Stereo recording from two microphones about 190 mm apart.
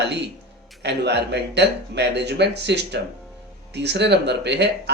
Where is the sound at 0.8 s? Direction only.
60° right (ahead or behind).